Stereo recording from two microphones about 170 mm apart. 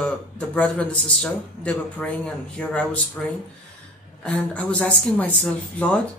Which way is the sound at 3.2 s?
5° left (ahead or behind).